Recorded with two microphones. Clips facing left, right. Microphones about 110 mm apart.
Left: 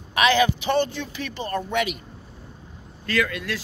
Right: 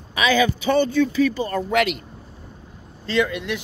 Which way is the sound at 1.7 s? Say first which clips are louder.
Right 6 dB; 85° right.